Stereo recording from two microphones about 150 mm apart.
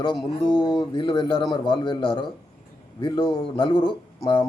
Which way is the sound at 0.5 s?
30° left (ahead or behind).